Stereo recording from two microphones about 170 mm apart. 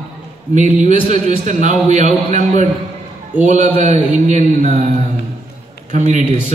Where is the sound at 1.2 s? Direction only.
45° right (ahead or behind).